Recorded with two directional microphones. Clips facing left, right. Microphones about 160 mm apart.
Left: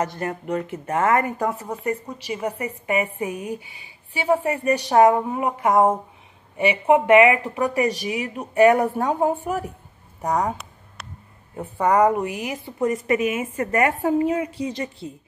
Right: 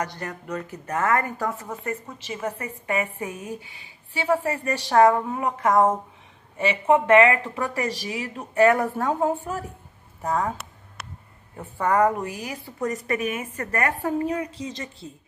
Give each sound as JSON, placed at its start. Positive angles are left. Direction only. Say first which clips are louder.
{"t": 0.0, "sound": "speech", "louder": "left 5 dB", "side_deg": 25}
{"t": 11.5, "sound": "a woman's voice", "louder": "left 3 dB", "side_deg": 15}